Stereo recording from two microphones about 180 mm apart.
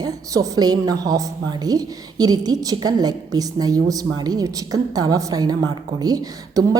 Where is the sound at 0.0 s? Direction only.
20° right (ahead or behind).